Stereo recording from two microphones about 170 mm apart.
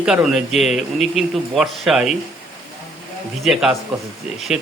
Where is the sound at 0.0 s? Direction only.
5° right (ahead or behind).